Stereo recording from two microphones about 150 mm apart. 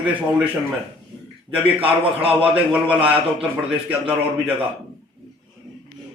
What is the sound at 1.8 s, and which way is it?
Speech, 40° right (ahead or behind).